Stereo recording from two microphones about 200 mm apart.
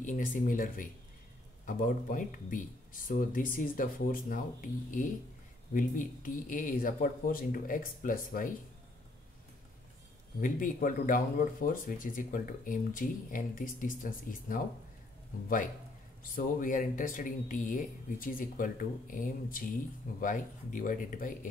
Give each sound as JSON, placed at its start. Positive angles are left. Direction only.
{"t": 0.0, "sound": "speech", "side_deg": 40}
{"t": 10.4, "sound": "speech", "side_deg": 45}
{"t": 16.2, "sound": "speech", "side_deg": 45}